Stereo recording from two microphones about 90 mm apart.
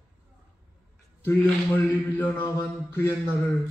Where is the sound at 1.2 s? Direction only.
25° left (ahead or behind).